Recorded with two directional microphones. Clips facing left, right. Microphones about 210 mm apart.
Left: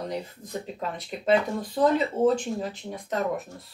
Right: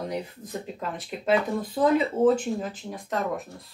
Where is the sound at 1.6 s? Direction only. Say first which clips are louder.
Right 1 dB; 5° right (ahead or behind).